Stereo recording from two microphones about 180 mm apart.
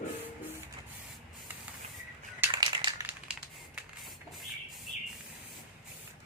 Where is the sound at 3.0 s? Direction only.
5° right (ahead or behind).